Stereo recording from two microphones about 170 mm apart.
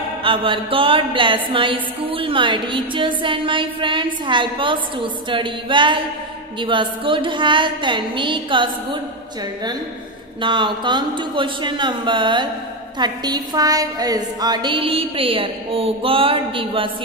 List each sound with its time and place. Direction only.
0.2 s a woman's voice: 30° right (ahead or behind)
10.4 s a woman's voice: 30° right (ahead or behind)